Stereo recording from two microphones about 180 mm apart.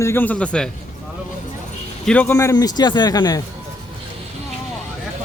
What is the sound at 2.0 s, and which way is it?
A man's voice, 10° left (ahead or behind).